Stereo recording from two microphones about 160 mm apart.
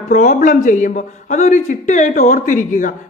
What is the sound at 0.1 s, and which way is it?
A woman's voice, 50° left (ahead or behind).